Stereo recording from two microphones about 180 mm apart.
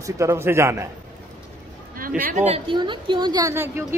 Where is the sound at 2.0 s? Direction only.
50° right (ahead or behind).